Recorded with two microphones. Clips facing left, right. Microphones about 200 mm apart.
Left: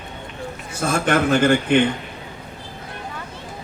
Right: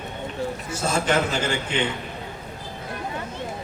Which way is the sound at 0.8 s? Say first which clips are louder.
Left 4 dB; 55° left (ahead or behind).